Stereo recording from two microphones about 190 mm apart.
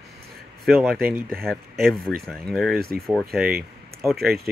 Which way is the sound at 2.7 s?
55° right (ahead or behind).